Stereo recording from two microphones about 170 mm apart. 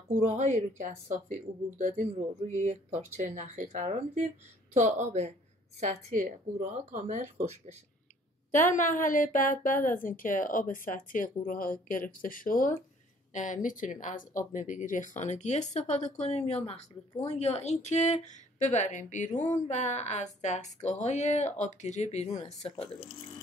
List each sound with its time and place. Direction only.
0.4 s speech: 45° right (ahead or behind)
8.5 s speech: 50° left (ahead or behind)